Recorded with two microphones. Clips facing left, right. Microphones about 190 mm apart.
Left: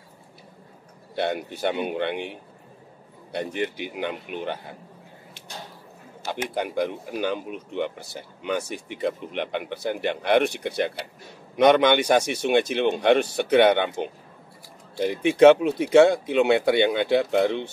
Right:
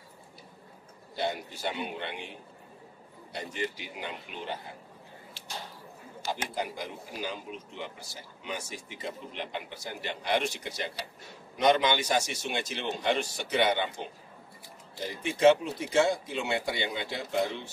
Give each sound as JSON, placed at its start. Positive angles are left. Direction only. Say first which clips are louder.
{"t": 1.1, "sound": "speech", "louder": "left 6 dB", "side_deg": 60}
{"t": 6.2, "sound": "speech", "louder": "left 5 dB", "side_deg": 60}